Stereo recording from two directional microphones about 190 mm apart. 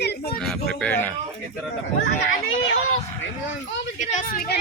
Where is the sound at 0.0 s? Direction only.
55° left (ahead or behind).